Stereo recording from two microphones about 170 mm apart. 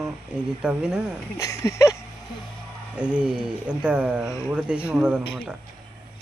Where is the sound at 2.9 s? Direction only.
5° right (ahead or behind).